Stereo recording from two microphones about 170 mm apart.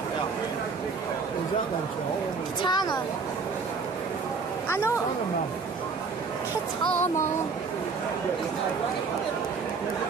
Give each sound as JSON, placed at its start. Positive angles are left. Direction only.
{"t": 2.7, "sound": "speech", "side_deg": 25}
{"t": 4.6, "sound": "speech", "side_deg": 15}